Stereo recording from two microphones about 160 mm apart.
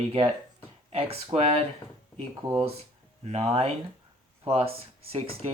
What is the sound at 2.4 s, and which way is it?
Speech, 30° right (ahead or behind).